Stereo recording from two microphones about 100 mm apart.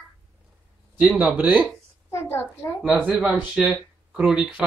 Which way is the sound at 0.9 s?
15° right (ahead or behind).